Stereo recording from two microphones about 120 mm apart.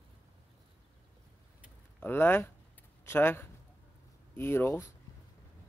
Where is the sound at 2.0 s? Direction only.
15° left (ahead or behind).